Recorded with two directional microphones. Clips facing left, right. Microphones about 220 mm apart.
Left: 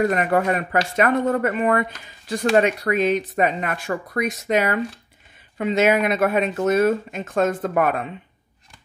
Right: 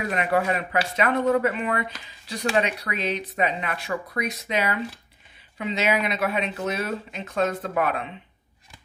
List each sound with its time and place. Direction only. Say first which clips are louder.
0.0 s speech: left 5 dB; 45° left (ahead or behind)